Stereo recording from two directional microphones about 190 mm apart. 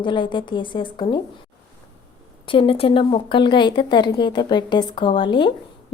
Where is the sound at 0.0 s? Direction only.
25° left (ahead or behind).